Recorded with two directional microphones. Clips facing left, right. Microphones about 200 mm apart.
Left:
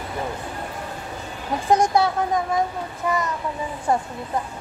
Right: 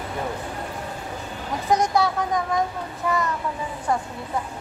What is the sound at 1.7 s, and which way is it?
Speech, 25° left (ahead or behind).